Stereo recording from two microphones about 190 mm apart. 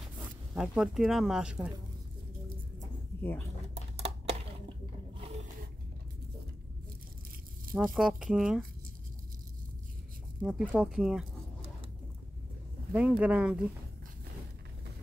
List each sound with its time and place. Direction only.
0.0 s speech: 5° right (ahead or behind)
3.2 s speech: 10° left (ahead or behind)
3.7 s a sound: 35° right (ahead or behind)
7.7 s speech: centre (ahead or behind)
10.4 s speech: 5° right (ahead or behind)
12.9 s speech: 5° right (ahead or behind)